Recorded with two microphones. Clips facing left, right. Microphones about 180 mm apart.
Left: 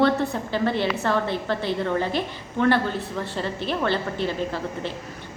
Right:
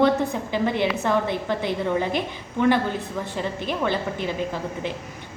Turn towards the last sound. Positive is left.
turn(degrees=-15)  # may be behind; listen again after turning